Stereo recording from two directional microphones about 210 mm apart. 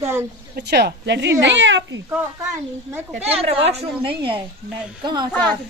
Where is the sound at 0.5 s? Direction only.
50° right (ahead or behind).